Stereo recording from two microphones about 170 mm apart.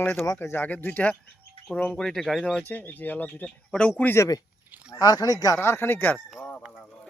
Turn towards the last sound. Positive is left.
turn(degrees=10)  # may be behind; listen again after turning